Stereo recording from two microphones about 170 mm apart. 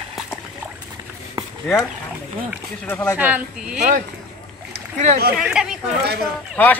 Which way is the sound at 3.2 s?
10° right (ahead or behind).